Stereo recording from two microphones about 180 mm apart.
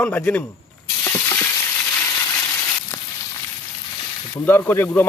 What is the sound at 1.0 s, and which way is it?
Stir, 15° left (ahead or behind).